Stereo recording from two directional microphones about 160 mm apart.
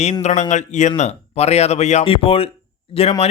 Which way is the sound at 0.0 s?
45° left (ahead or behind).